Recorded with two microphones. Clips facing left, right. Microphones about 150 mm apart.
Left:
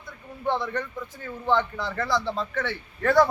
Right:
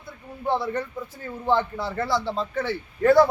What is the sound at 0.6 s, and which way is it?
Speech, 30° right (ahead or behind).